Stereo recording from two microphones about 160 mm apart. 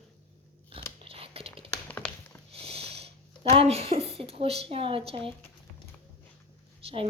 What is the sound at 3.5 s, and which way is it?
A woman's voice, 40° right (ahead or behind).